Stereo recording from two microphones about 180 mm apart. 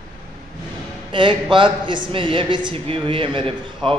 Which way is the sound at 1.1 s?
25° right (ahead or behind).